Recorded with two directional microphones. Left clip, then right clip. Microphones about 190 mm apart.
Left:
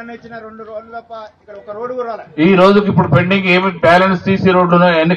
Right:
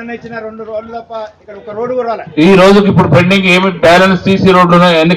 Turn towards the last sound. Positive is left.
turn(degrees=-15)  # may be behind; listen again after turning